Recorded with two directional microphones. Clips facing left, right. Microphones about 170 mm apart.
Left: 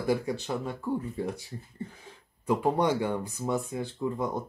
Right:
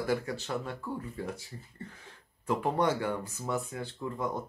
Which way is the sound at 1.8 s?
15° left (ahead or behind).